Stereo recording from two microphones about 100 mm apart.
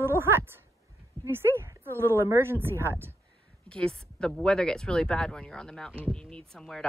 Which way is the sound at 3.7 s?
10° left (ahead or behind).